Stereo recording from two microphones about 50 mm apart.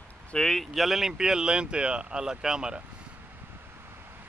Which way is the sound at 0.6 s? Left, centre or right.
Centre.